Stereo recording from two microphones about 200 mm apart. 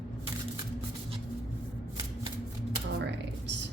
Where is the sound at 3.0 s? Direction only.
60° right (ahead or behind).